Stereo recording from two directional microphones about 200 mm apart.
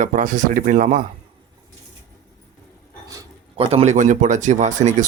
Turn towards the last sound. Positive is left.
turn(degrees=-35)  # may be behind; listen again after turning